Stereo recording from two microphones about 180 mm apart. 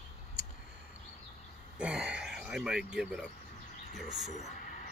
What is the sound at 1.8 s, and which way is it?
Speech, 5° right (ahead or behind).